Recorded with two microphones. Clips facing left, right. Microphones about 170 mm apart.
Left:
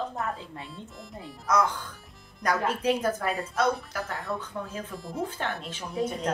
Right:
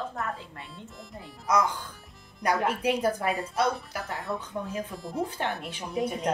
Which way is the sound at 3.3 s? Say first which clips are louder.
Left 1 dB; centre (ahead or behind).